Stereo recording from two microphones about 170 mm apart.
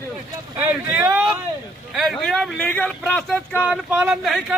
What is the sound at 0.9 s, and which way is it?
A man's voice, 5° right (ahead or behind).